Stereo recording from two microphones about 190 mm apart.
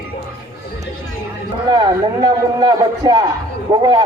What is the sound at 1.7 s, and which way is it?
A man's voice, 20° right (ahead or behind).